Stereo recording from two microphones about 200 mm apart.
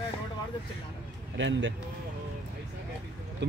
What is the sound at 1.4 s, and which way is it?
Speech, 65° right (ahead or behind).